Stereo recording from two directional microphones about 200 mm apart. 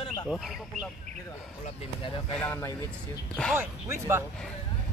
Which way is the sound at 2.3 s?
5° left (ahead or behind).